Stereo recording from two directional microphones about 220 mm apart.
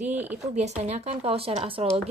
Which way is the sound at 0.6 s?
30° right (ahead or behind).